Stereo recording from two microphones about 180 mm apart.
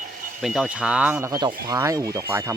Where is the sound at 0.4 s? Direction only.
Centre (ahead or behind).